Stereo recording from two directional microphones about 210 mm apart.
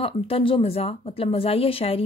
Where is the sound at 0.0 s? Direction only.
25° left (ahead or behind).